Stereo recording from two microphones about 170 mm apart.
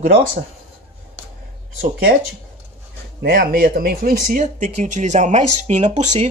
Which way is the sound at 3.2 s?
60° right (ahead or behind).